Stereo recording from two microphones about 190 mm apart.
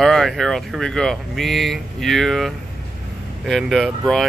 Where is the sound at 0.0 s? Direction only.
Centre (ahead or behind).